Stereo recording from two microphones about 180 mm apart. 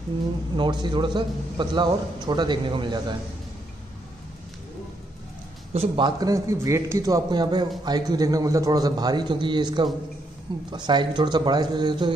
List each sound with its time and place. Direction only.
0.6 s speech: 25° right (ahead or behind)
5.7 s speech: 30° right (ahead or behind)